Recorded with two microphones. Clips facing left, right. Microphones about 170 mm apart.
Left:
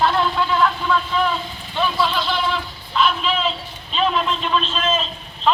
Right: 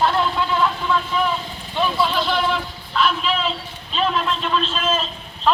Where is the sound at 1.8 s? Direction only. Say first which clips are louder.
Even; centre (ahead or behind).